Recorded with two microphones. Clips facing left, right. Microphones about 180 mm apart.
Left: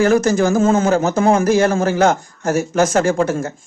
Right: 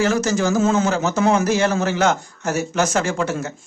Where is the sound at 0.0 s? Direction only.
55° left (ahead or behind).